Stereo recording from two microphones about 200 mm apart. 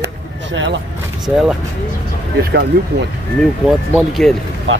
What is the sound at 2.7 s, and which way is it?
Speech, 60° right (ahead or behind).